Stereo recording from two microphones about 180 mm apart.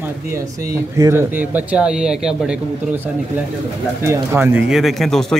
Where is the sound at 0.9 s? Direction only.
15° right (ahead or behind).